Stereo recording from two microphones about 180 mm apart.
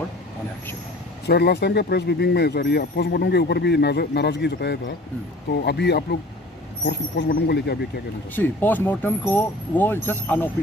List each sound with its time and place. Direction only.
1.2 s speech: 65° left (ahead or behind)
7.2 s speech: 60° left (ahead or behind)
8.4 s speech: 10° left (ahead or behind)